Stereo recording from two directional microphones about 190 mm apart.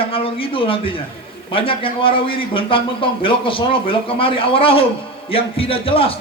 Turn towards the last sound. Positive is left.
turn(degrees=30)  # may be behind; listen again after turning